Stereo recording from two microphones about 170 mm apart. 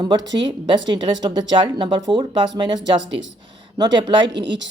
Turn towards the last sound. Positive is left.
turn(degrees=-90)